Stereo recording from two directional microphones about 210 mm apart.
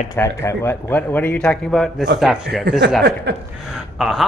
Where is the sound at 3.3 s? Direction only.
55° right (ahead or behind).